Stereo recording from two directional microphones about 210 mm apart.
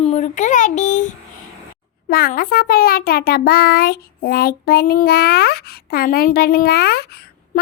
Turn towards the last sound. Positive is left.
turn(degrees=50)  # may be behind; listen again after turning